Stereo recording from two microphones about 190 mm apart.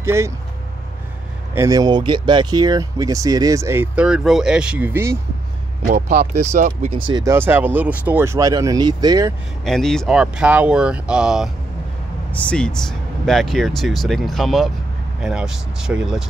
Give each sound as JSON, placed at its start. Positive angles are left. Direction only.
{"t": 0.0, "sound": "speech", "side_deg": -15}
{"t": 1.5, "sound": "speech", "side_deg": -15}
{"t": 6.4, "sound": "speech", "side_deg": -40}
{"t": 9.7, "sound": "speech", "side_deg": 0}